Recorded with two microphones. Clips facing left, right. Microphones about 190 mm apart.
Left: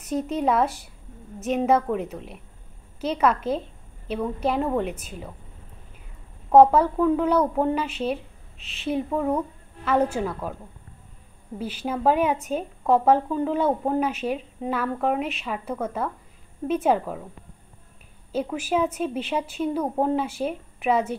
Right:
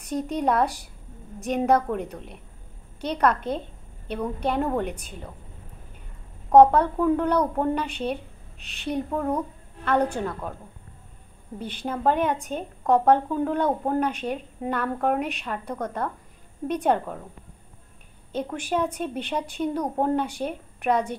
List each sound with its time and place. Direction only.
0.0 s a woman's voice: 5° left (ahead or behind)
6.5 s a woman's voice: 5° left (ahead or behind)
11.5 s a woman's voice: 5° left (ahead or behind)
18.3 s a woman's voice: 5° left (ahead or behind)